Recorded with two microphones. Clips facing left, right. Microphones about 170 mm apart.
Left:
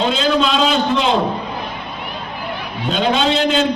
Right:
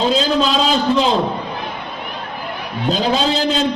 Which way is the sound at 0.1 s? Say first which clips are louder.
Even; 35° right (ahead or behind).